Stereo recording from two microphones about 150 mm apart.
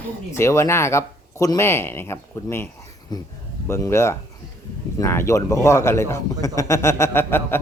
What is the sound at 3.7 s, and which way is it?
A man's voice, 15° left (ahead or behind).